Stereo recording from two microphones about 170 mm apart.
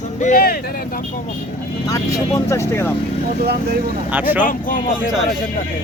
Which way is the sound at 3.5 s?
70° right (ahead or behind).